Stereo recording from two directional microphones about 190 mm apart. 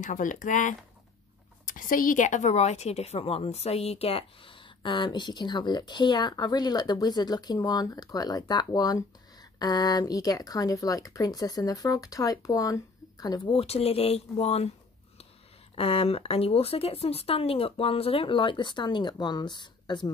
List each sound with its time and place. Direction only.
0.0 s a woman's voice: 45° left (ahead or behind)
15.7 s a woman's voice: 30° left (ahead or behind)